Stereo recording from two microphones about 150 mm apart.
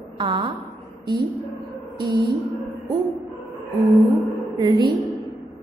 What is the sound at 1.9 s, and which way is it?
Music, 30° right (ahead or behind).